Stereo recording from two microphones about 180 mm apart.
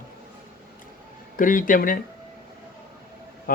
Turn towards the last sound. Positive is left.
turn(degrees=50)  # may be behind; listen again after turning